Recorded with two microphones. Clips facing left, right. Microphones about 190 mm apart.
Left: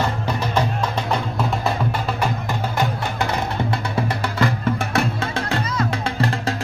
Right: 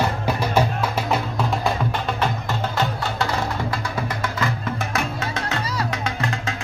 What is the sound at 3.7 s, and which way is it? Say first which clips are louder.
Music: left 3 dB; 25° left (ahead or behind).